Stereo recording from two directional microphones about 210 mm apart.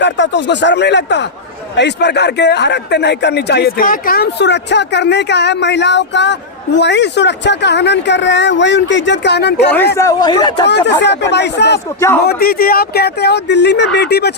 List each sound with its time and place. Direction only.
0.0 s a man's voice: 55° left (ahead or behind)
10.0 s a man's voice: 15° left (ahead or behind)
10.7 s speech: 55° left (ahead or behind)
11.9 s a man's voice: 15° left (ahead or behind)
12.2 s speech: 45° left (ahead or behind)